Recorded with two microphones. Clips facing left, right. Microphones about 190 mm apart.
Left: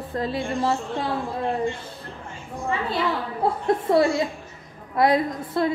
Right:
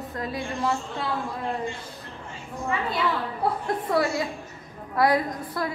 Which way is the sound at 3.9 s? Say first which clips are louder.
Left 4 dB; 25° left (ahead or behind).